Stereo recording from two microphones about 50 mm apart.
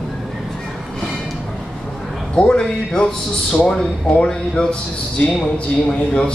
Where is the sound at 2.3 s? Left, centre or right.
Centre.